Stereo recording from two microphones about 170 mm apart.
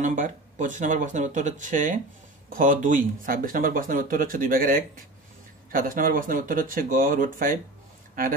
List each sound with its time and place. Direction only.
0.0 s speech: 50° right (ahead or behind)